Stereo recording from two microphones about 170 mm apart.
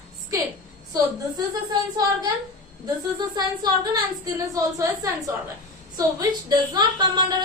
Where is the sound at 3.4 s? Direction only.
25° right (ahead or behind).